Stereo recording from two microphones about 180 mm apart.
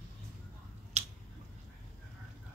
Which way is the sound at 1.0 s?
40° right (ahead or behind).